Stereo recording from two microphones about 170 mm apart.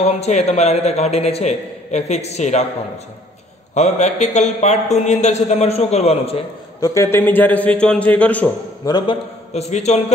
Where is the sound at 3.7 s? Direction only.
40° left (ahead or behind).